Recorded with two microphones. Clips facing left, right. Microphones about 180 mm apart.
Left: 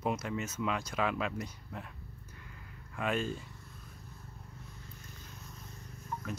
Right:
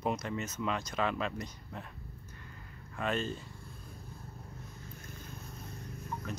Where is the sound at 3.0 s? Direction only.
10° left (ahead or behind).